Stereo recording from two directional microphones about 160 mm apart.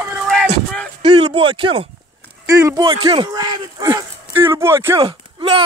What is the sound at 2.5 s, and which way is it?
Speech, 20° right (ahead or behind).